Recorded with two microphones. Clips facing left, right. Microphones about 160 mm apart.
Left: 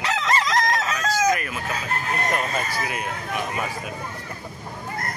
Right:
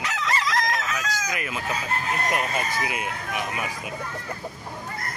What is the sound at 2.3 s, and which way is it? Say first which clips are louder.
Speech: left 1 dB; 15° right (ahead or behind).